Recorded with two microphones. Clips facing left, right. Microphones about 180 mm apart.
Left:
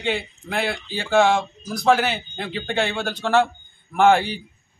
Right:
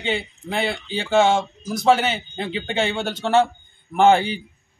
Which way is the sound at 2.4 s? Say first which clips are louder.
Right 1 dB; 20° right (ahead or behind).